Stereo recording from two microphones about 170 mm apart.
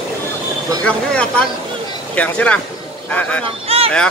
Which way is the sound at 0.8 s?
5° left (ahead or behind).